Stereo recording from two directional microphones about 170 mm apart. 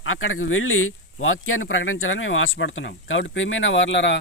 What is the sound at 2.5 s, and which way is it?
Speech, 90° left.